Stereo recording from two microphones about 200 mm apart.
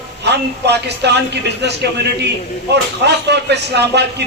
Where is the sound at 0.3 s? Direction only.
55° right (ahead or behind).